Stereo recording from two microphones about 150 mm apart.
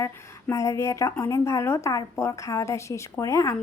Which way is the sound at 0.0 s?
20° left (ahead or behind).